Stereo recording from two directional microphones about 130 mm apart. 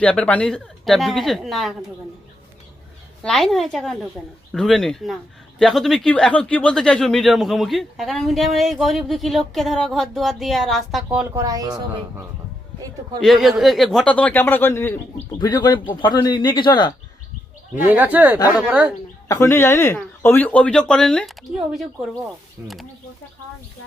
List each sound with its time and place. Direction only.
0.0 s speech: 10° left (ahead or behind)
3.2 s speech: centre (ahead or behind)
11.3 s speech: 30° right (ahead or behind)
13.2 s speech: centre (ahead or behind); by 14.9 s 20° left (ahead or behind)
15.4 s speech: 35° left (ahead or behind)
17.8 s speech: 15° right (ahead or behind)
19.3 s speech: 20° left (ahead or behind); by 22.9 s centre (ahead or behind)